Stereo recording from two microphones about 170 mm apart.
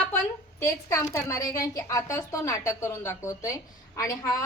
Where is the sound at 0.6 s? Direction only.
15° left (ahead or behind).